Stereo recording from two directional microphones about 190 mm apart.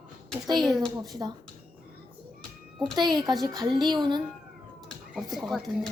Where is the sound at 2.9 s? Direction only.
20° right (ahead or behind).